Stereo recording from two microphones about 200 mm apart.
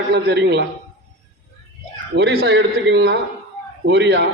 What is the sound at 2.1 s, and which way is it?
A man's voice, 55° right (ahead or behind).